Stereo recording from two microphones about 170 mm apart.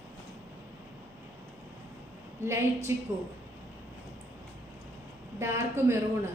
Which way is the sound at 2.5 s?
15° right (ahead or behind).